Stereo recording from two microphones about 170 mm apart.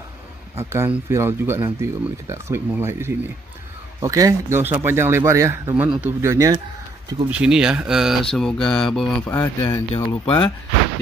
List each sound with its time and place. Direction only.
0.6 s speech: 15° right (ahead or behind)
7.2 s speech: 5° right (ahead or behind)
9.3 s speech: 20° left (ahead or behind)